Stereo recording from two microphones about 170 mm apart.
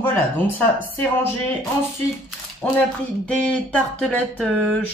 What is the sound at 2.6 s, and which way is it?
Speech, 10° left (ahead or behind).